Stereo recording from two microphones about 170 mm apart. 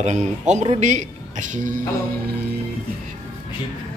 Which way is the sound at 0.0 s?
45° right (ahead or behind).